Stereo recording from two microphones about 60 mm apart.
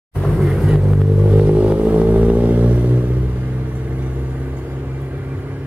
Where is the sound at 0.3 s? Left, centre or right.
Centre.